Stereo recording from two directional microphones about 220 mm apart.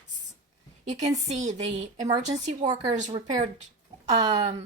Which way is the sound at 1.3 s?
30° right (ahead or behind).